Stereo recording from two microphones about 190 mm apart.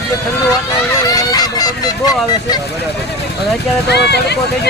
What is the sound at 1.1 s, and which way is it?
Speech, 20° left (ahead or behind).